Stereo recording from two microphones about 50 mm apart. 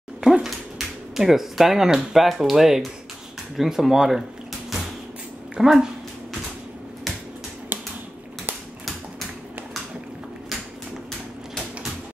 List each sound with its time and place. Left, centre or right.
0.2 s speech: centre
5.6 s speech: centre
7.7 s typewriter: right